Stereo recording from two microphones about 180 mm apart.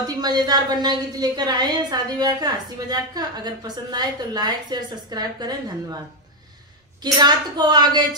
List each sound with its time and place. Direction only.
0.0 s a woman's voice: 20° right (ahead or behind)
7.0 s a woman's voice: 25° right (ahead or behind)